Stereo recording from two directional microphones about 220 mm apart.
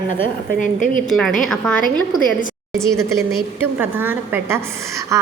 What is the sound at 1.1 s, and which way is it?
Speech, centre (ahead or behind).